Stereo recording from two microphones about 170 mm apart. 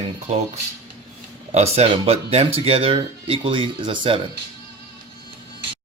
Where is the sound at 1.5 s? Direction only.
40° right (ahead or behind).